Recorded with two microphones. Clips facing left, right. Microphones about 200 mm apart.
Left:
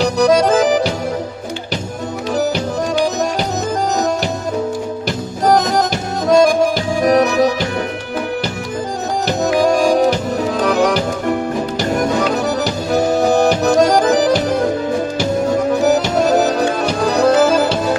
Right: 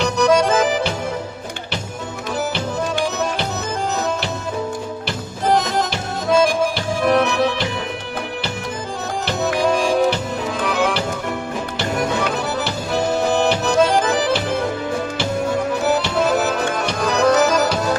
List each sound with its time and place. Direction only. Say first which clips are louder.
0.0 s music: left 3 dB; 35° left (ahead or behind)
5.0 s music: left 6 dB; 40° left (ahead or behind)
9.4 s music: left 4 dB; 40° left (ahead or behind)
15.8 s music: left 5 dB; 45° left (ahead or behind)